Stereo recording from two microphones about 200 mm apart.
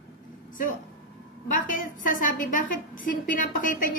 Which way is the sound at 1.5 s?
40° left (ahead or behind).